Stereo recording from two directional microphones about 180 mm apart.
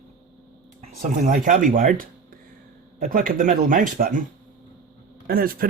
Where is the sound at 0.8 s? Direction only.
40° right (ahead or behind).